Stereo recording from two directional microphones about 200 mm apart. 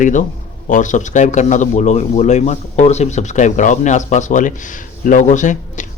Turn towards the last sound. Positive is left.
turn(degrees=40)  # may be behind; listen again after turning